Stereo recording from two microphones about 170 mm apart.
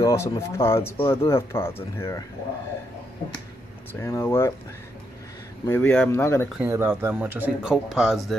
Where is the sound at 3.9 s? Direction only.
15° left (ahead or behind).